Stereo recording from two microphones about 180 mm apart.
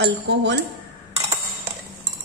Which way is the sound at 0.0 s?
75° right (ahead or behind).